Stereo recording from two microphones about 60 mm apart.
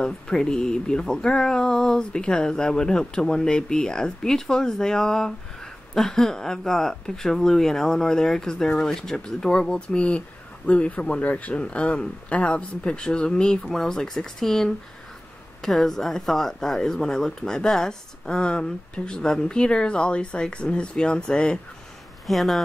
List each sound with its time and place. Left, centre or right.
0.0 s speech: centre
22.2 s speech: centre